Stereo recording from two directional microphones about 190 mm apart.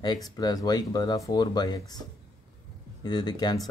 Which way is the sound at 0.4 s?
20° left (ahead or behind).